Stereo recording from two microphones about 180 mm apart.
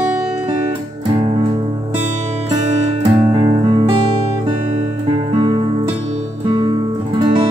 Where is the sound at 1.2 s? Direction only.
30° right (ahead or behind).